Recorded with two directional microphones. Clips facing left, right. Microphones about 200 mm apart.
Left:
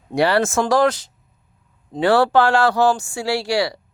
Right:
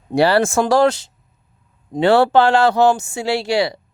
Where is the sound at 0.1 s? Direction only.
30° right (ahead or behind).